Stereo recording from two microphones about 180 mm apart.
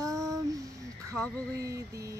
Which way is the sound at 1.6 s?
20° right (ahead or behind).